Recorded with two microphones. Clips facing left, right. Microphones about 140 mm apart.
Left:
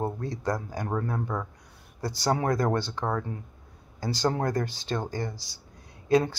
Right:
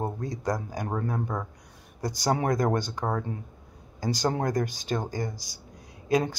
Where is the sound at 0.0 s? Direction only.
15° right (ahead or behind).